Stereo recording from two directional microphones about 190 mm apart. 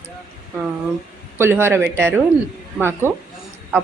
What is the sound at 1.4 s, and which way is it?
A woman's voice, 10° right (ahead or behind).